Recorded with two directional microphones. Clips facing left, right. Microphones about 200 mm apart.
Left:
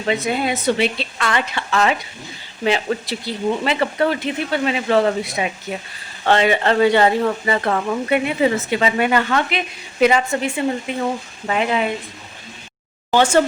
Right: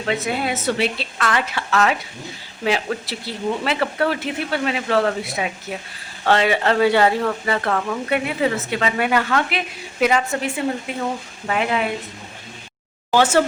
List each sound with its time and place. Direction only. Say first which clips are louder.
0.0 s speech: left 2 dB; centre (ahead or behind)
13.1 s speech: left 1 dB; 5° right (ahead or behind)